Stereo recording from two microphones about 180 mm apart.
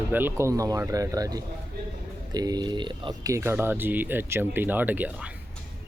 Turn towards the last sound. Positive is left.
turn(degrees=-10)  # may be behind; listen again after turning